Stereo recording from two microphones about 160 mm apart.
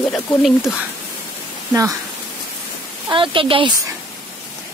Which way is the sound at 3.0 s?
30° right (ahead or behind).